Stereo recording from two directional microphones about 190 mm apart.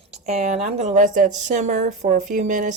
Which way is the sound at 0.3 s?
35° right (ahead or behind).